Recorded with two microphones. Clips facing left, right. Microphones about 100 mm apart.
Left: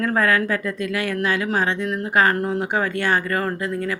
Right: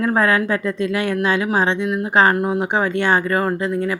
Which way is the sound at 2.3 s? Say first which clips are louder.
Right 3 dB; 15° right (ahead or behind).